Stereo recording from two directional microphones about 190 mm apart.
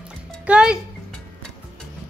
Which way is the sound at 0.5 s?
5° right (ahead or behind).